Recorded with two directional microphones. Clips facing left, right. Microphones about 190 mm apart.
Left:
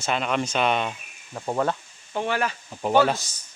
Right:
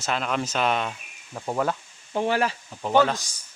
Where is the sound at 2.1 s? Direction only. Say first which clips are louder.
Right 2 dB; 35° right (ahead or behind).